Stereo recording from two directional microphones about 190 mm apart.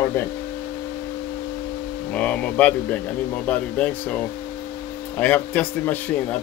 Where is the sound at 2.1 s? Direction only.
5° left (ahead or behind).